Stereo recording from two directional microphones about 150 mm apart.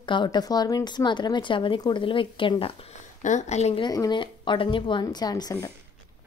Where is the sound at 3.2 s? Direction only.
50° left (ahead or behind).